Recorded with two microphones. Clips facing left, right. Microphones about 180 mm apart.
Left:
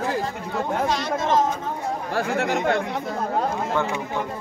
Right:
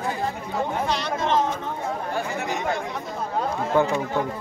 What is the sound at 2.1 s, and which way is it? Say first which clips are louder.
Speech: left 4 dB; 75° left (ahead or behind).